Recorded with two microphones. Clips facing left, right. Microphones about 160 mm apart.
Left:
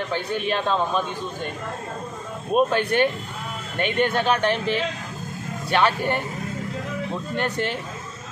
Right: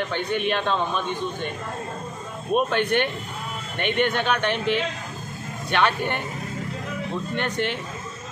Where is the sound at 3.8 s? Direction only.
40° left (ahead or behind).